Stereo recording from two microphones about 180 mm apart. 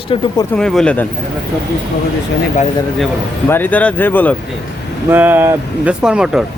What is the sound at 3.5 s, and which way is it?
Speech, 10° left (ahead or behind).